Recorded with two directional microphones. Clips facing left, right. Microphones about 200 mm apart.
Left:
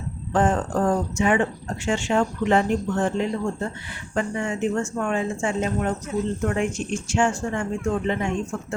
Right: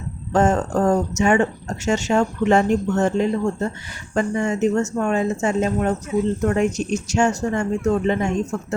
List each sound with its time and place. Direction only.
0.3 s speech: 40° right (ahead or behind)